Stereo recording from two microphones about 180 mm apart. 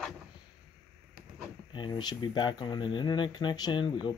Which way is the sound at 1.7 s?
25° left (ahead or behind).